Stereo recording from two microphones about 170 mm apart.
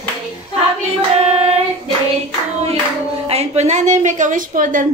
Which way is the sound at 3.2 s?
40° right (ahead or behind).